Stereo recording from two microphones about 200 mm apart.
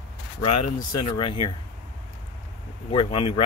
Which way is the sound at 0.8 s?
20° left (ahead or behind).